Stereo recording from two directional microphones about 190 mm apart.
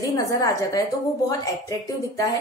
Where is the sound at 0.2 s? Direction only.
20° left (ahead or behind).